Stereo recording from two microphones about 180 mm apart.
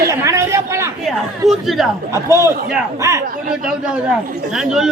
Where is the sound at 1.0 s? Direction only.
Centre (ahead or behind).